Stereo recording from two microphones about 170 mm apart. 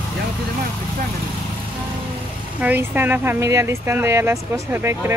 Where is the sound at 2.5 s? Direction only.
10° right (ahead or behind).